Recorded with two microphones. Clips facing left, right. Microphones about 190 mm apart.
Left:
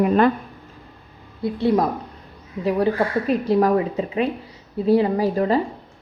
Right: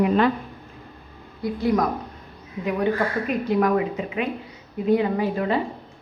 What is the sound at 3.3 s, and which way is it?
Speech, 35° left (ahead or behind).